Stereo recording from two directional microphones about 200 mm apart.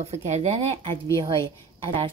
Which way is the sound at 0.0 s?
30° right (ahead or behind).